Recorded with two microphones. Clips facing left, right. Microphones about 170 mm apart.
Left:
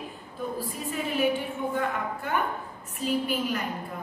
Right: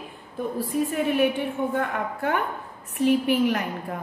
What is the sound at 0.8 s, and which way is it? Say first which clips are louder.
A woman's voice: right 2 dB; 55° right (ahead or behind).